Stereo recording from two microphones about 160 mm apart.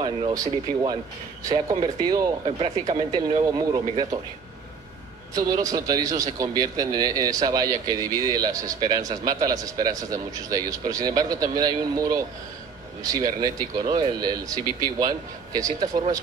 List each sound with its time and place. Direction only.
0.0 s a man's voice: 25° right (ahead or behind)
5.3 s a man's voice: 20° right (ahead or behind)